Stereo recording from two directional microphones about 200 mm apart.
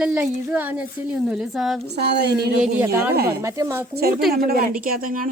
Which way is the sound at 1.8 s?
55° right (ahead or behind).